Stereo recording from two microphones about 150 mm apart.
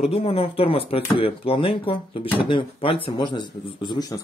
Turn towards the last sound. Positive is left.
turn(degrees=30)  # may be behind; listen again after turning